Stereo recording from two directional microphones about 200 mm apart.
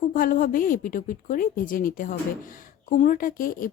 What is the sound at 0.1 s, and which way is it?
Speech, 45° left (ahead or behind).